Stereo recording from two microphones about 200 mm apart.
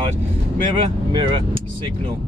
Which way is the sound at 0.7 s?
25° right (ahead or behind).